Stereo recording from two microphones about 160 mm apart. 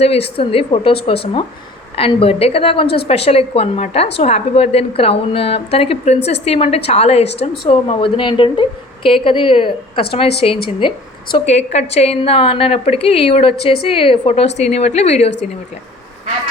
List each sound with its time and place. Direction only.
0.0 s a woman's voice: 40° left (ahead or behind)